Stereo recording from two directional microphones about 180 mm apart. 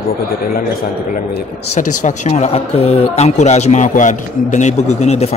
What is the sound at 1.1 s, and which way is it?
Speech, 45° left (ahead or behind).